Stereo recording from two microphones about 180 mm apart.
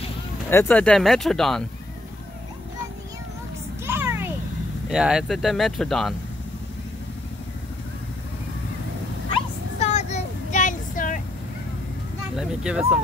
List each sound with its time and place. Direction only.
0.5 s speech: 10° left (ahead or behind)
3.8 s a sound: 10° right (ahead or behind)
4.8 s speech: 5° right (ahead or behind)
9.8 s child singing: 40° left (ahead or behind)
12.4 s speech: 5° right (ahead or behind)